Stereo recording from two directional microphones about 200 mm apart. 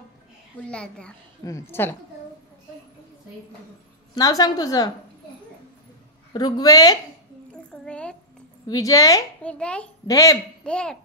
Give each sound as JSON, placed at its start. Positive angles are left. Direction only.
{"t": 0.7, "sound": "a child's voice", "side_deg": 5}
{"t": 4.1, "sound": "a woman's voice", "side_deg": 20}
{"t": 6.3, "sound": "speech", "side_deg": 20}
{"t": 7.7, "sound": "a woman's voice", "side_deg": 5}
{"t": 8.6, "sound": "a woman's voice", "side_deg": 15}
{"t": 9.4, "sound": "a child's voice", "side_deg": 5}
{"t": 10.0, "sound": "a woman's voice", "side_deg": 15}
{"t": 10.6, "sound": "a child's voice", "side_deg": 5}